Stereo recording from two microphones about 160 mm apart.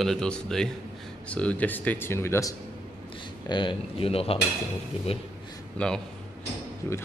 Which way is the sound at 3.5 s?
30° left (ahead or behind).